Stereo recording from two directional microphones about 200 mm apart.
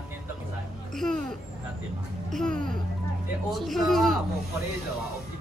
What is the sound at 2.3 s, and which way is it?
Music, 5° left (ahead or behind).